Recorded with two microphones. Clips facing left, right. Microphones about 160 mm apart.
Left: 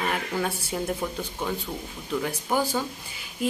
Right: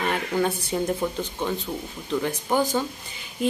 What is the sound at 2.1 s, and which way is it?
Speech, 5° left (ahead or behind).